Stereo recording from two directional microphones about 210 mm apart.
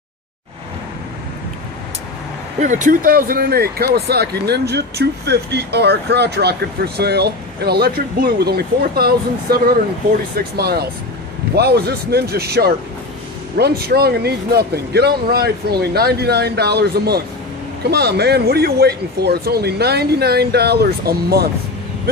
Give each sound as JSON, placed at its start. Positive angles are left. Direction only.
{"t": 2.6, "sound": "speech", "side_deg": -35}